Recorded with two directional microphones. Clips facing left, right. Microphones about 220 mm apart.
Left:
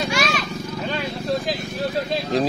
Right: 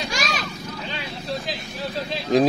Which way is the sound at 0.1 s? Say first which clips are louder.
Left 4 dB; 40° right (ahead or behind).